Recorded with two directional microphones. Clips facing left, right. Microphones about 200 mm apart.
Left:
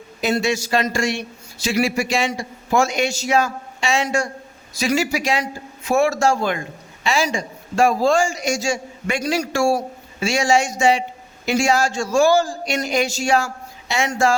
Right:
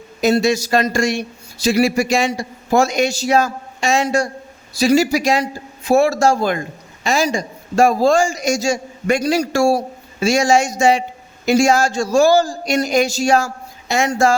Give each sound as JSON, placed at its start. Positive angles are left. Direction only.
{"t": 0.2, "sound": "a man's voice", "side_deg": -40}